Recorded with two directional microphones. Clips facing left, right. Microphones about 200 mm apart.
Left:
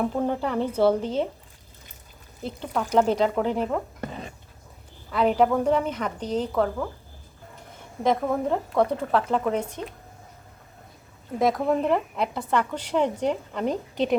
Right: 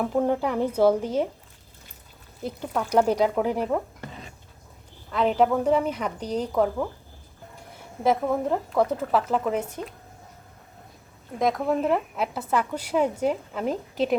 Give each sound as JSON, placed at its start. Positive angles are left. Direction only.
{"t": 0.0, "sound": "a woman's voice", "side_deg": -5}
{"t": 2.4, "sound": "a woman's voice", "side_deg": -10}
{"t": 5.1, "sound": "a woman's voice", "side_deg": 0}
{"t": 8.0, "sound": "speech", "side_deg": -5}
{"t": 11.3, "sound": "speech", "side_deg": 0}